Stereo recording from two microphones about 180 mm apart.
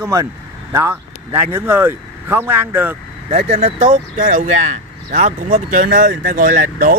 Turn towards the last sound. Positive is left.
turn(degrees=-50)  # may be behind; listen again after turning